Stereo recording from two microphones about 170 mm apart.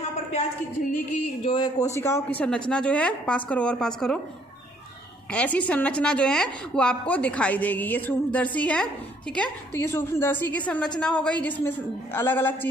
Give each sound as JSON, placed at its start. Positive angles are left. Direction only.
{"t": 1.5, "sound": "a woman's voice", "side_deg": 25}
{"t": 5.3, "sound": "a woman's voice", "side_deg": 10}